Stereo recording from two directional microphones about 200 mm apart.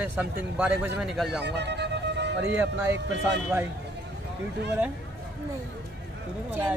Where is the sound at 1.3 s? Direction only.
60° right (ahead or behind).